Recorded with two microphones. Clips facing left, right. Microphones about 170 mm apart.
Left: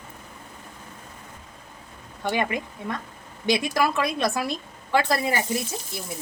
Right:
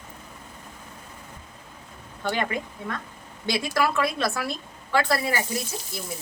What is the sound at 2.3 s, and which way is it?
A woman's voice, 15° left (ahead or behind).